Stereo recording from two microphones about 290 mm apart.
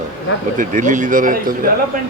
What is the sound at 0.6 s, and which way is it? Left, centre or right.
Speech, right.